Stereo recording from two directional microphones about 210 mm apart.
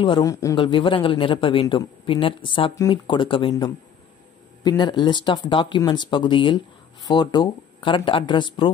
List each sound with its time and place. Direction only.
0.0 s speech: 20° left (ahead or behind)